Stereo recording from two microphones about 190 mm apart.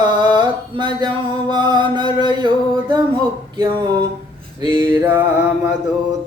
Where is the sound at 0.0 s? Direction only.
25° right (ahead or behind).